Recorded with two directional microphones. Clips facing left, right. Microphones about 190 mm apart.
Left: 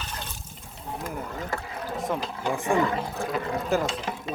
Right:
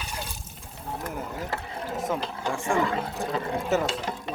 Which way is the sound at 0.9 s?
5° right (ahead or behind).